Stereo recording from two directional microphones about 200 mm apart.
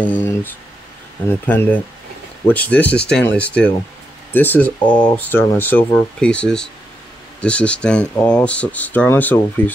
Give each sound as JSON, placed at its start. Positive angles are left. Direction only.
{"t": 0.0, "sound": "speech", "side_deg": 10}
{"t": 4.8, "sound": "speech", "side_deg": 25}
{"t": 5.1, "sound": "speech", "side_deg": 10}